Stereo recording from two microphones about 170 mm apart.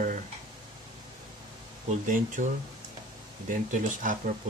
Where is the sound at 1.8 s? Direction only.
50° right (ahead or behind).